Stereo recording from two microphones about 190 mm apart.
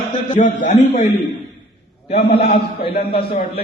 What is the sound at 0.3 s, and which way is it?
A man's voice, 40° left (ahead or behind).